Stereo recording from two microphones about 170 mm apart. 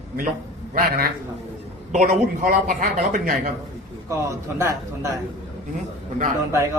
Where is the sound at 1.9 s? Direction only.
50° right (ahead or behind).